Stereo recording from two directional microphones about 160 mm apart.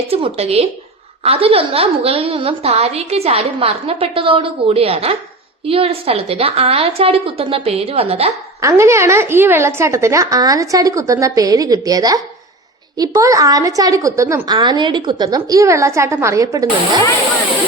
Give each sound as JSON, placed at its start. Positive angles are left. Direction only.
{"t": 0.1, "sound": "a woman's voice", "side_deg": -35}
{"t": 8.6, "sound": "a woman's voice", "side_deg": -15}